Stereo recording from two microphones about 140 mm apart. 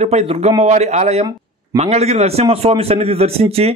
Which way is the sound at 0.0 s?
50° right (ahead or behind).